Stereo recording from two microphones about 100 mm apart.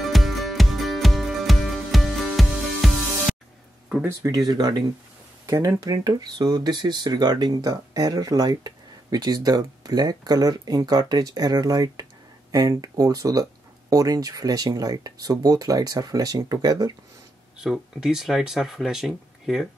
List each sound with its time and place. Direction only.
0.0 s music: centre (ahead or behind)
4.3 s speech: 40° right (ahead or behind)
5.5 s speech: 35° right (ahead or behind)
17.6 s speech: 5° right (ahead or behind)